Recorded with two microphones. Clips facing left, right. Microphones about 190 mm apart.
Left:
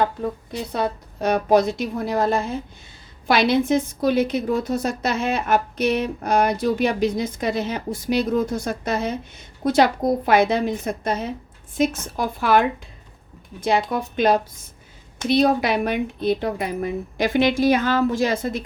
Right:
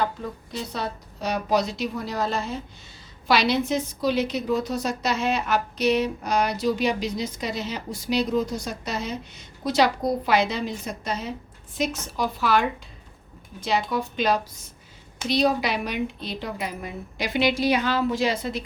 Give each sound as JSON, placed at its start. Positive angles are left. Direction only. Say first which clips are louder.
{"t": 0.7, "sound": "a woman's voice", "louder": "left 6 dB", "side_deg": 55}